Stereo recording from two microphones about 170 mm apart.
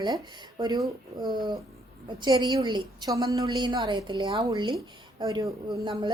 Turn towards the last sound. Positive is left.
turn(degrees=-25)  # may be behind; listen again after turning